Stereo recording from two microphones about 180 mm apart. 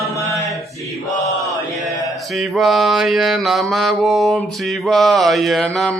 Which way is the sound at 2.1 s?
Centre (ahead or behind).